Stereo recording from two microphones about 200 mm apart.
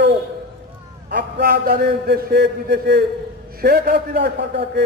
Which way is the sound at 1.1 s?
55° right (ahead or behind).